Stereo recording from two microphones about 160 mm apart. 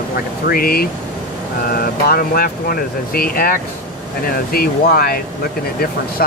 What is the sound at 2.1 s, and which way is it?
Speech, 70° left (ahead or behind).